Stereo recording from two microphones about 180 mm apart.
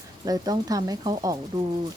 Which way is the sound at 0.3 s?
20° right (ahead or behind).